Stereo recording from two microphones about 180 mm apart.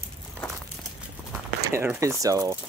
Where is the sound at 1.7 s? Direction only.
15° right (ahead or behind).